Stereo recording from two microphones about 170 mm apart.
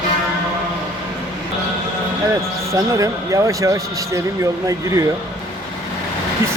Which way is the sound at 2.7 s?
20° right (ahead or behind).